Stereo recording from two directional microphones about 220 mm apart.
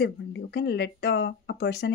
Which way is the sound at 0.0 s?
50° left (ahead or behind).